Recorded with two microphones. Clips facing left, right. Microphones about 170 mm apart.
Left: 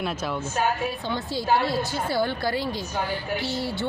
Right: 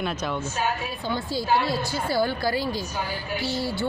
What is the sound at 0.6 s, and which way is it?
Speech, 50° left (ahead or behind).